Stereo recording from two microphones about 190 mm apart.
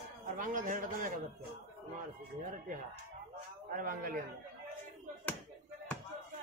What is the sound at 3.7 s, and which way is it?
Speech, 45° right (ahead or behind).